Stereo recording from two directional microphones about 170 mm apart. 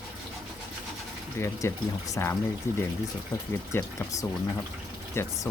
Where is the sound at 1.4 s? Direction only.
15° left (ahead or behind).